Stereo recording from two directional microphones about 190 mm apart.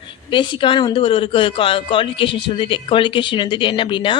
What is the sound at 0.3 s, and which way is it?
A woman's voice, 25° left (ahead or behind).